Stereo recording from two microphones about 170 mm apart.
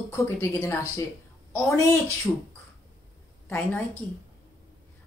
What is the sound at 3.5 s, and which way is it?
Speech, 15° left (ahead or behind).